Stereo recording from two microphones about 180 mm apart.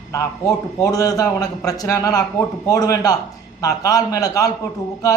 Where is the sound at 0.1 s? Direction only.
20° left (ahead or behind).